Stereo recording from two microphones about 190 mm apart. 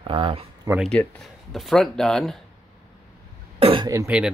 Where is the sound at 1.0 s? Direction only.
10° left (ahead or behind).